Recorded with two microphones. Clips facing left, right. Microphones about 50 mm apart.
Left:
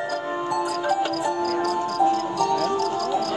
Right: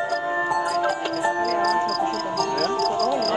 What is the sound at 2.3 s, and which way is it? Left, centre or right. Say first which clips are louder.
Music: left 1 dB; right.